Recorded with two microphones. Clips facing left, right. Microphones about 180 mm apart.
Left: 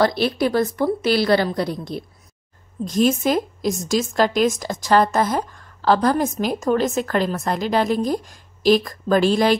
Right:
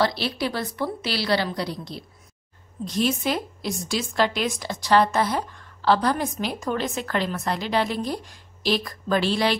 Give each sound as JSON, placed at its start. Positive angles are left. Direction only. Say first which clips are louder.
{"t": 0.0, "sound": "a woman's voice", "louder": "left 6 dB", "side_deg": 50}